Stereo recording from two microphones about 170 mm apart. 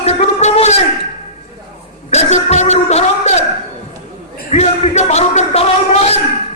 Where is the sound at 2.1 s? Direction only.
40° left (ahead or behind).